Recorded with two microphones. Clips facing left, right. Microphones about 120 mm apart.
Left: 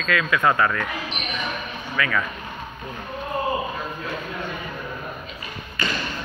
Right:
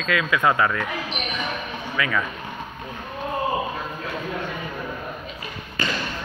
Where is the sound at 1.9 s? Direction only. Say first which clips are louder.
Left 1 dB; 20° right (ahead or behind).